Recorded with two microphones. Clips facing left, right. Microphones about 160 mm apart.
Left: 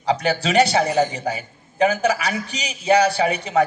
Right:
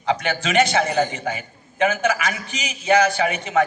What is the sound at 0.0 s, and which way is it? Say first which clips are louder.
A man's voice: left 2 dB; 35° left (ahead or behind).